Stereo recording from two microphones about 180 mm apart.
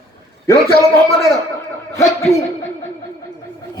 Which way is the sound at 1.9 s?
15° left (ahead or behind).